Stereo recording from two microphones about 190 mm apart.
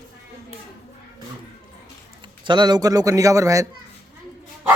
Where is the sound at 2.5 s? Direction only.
25° right (ahead or behind).